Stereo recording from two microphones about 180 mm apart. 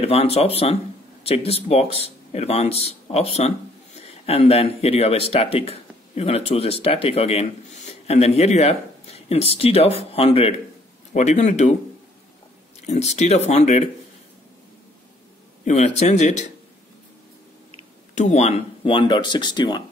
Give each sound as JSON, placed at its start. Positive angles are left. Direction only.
{"t": 0.0, "sound": "speech", "side_deg": 35}
{"t": 12.8, "sound": "speech", "side_deg": 40}
{"t": 15.6, "sound": "speech", "side_deg": 40}
{"t": 18.1, "sound": "speech", "side_deg": 40}